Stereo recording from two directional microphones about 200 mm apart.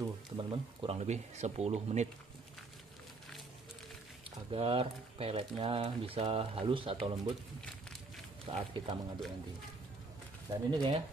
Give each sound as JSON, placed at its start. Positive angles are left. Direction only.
{"t": 0.0, "sound": "speech", "side_deg": -25}
{"t": 4.5, "sound": "speech", "side_deg": -25}
{"t": 8.5, "sound": "speech", "side_deg": -25}
{"t": 10.5, "sound": "speech", "side_deg": -20}